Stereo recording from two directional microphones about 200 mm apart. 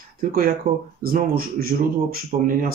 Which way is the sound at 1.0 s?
45° right (ahead or behind).